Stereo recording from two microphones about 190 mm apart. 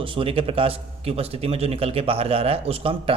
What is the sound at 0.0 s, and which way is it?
A man's voice, 25° right (ahead or behind).